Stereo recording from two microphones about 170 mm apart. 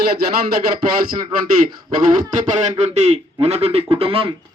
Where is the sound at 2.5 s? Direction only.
45° right (ahead or behind).